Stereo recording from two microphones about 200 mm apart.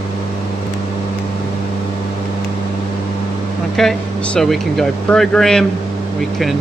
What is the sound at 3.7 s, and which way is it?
Speech, 5° left (ahead or behind).